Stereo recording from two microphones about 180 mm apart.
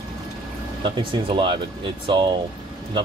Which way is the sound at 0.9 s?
25° right (ahead or behind).